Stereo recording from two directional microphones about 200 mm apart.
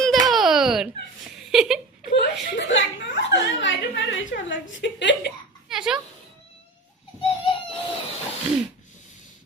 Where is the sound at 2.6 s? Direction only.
70° left (ahead or behind).